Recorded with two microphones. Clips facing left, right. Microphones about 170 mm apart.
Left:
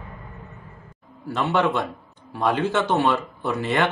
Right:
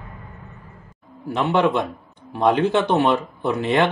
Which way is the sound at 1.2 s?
15° right (ahead or behind).